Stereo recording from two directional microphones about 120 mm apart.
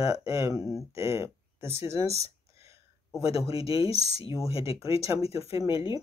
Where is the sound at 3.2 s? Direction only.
55° left (ahead or behind).